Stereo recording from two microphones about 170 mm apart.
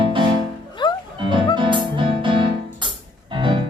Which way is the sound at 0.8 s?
25° left (ahead or behind).